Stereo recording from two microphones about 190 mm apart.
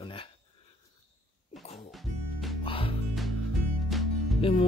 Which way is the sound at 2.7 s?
30° left (ahead or behind).